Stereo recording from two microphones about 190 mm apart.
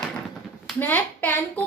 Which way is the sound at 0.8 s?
10° left (ahead or behind).